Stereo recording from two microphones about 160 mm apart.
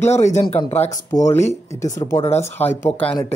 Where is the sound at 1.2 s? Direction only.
15° left (ahead or behind).